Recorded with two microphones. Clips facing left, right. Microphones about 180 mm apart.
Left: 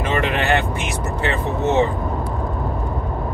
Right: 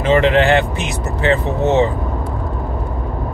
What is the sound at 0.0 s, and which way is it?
Vehicle, 20° right (ahead or behind).